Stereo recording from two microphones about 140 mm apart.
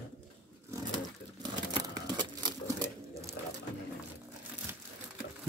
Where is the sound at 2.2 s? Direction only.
30° right (ahead or behind).